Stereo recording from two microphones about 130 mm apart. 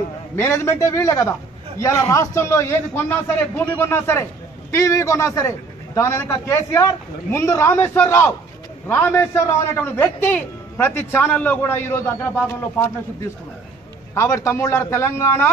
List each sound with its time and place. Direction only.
0.4 s a man's voice: 20° left (ahead or behind)
14.1 s a man's voice: 20° left (ahead or behind)